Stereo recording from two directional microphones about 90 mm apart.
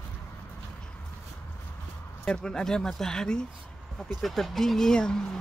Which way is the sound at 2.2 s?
10° left (ahead or behind).